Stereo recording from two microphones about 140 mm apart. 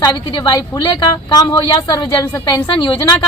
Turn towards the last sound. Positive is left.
turn(degrees=35)  # may be behind; listen again after turning